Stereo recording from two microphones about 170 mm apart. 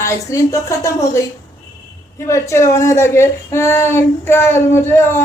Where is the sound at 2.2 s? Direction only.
15° left (ahead or behind).